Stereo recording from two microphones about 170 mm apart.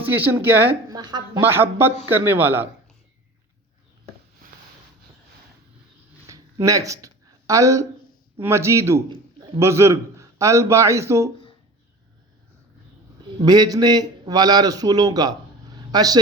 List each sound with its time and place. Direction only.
0.0 s a man's voice: 10° right (ahead or behind)
0.9 s a man's voice: 25° right (ahead or behind)
1.4 s a man's voice: 15° right (ahead or behind)
6.2 s a sound: 20° right (ahead or behind)
8.4 s a man's voice: 15° right (ahead or behind)
13.4 s a man's voice: 25° right (ahead or behind)